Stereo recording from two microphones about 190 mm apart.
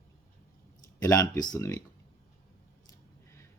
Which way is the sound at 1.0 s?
15° left (ahead or behind).